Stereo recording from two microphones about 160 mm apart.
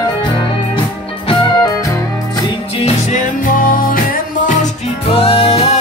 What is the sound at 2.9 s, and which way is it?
Music, 50° left (ahead or behind).